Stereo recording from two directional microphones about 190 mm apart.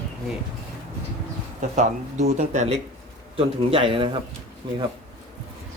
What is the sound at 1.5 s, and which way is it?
A man's voice, 40° right (ahead or behind).